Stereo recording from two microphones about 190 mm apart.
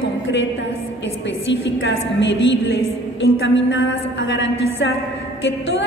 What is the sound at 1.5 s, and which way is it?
A woman's voice, 70° left (ahead or behind).